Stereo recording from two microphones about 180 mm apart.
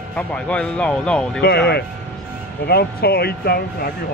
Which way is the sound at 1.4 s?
60° left (ahead or behind).